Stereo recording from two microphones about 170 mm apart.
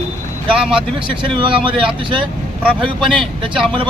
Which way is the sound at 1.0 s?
30° right (ahead or behind).